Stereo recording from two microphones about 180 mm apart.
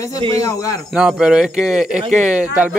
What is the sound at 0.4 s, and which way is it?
Speech, 20° left (ahead or behind).